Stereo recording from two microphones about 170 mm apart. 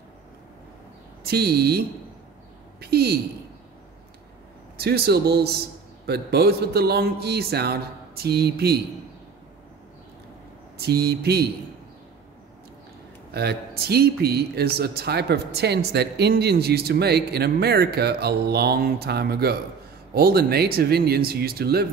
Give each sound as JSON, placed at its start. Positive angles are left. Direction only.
{"t": 1.2, "sound": "speech", "side_deg": -70}
{"t": 4.7, "sound": "speech", "side_deg": -70}
{"t": 10.8, "sound": "speech", "side_deg": -70}
{"t": 13.3, "sound": "speech", "side_deg": -70}